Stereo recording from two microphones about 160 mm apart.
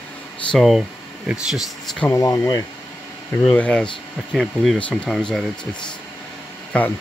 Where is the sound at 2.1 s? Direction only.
20° left (ahead or behind).